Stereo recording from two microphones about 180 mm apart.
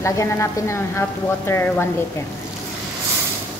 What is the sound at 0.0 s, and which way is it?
A woman's voice, 15° left (ahead or behind).